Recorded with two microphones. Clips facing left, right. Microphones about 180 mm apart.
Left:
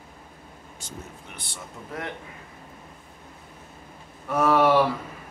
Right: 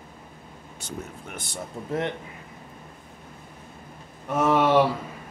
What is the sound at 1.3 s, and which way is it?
Speech, 45° right (ahead or behind).